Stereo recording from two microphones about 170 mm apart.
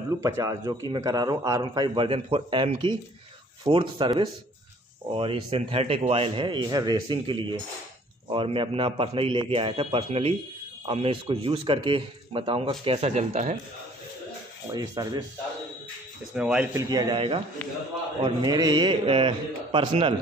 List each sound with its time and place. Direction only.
0.1 s a man's voice: 20° right (ahead or behind); by 13.6 s 45° right (ahead or behind)
14.7 s a man's voice: 20° right (ahead or behind)
16.3 s speech: 5° right (ahead or behind)
16.7 s a man's voice: 25° right (ahead or behind)